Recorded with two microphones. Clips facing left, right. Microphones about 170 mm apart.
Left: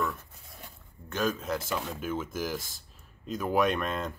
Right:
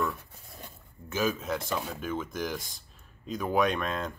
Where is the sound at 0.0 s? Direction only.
Centre (ahead or behind).